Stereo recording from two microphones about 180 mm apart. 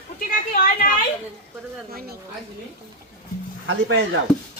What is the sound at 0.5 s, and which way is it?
Speech, 55° left (ahead or behind).